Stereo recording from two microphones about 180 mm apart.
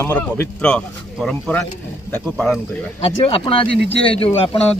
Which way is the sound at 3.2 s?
30° left (ahead or behind).